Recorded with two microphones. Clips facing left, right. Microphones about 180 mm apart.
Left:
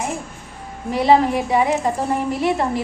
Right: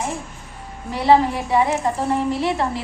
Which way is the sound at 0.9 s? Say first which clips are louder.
Left 1 dB; 15° left (ahead or behind).